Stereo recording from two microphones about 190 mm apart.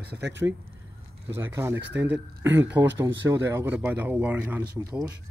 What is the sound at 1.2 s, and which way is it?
Speech, 15° right (ahead or behind).